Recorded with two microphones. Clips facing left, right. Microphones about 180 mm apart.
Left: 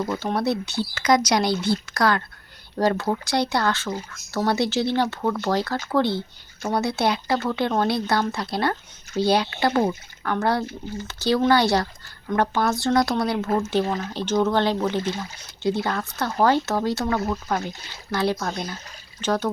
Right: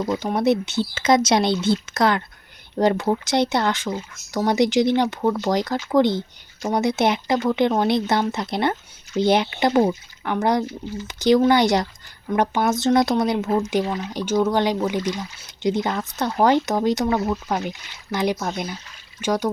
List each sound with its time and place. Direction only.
0.1 s speech: 15° right (ahead or behind)